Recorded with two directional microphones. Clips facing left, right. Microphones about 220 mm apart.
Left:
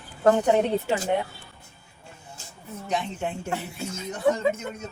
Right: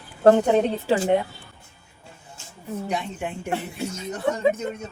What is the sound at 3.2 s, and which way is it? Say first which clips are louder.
Speech: left 1 dB; 10° right (ahead or behind).